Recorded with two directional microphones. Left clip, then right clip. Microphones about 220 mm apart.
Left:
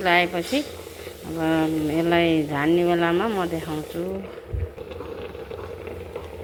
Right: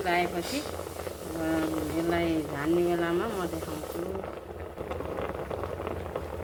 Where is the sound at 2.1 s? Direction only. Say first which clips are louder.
Left 9 dB; 30° left (ahead or behind).